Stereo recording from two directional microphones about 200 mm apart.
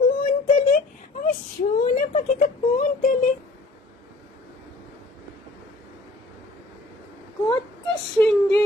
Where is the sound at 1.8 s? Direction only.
40° left (ahead or behind).